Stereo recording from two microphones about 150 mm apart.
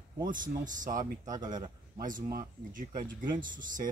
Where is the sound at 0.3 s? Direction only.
65° right (ahead or behind).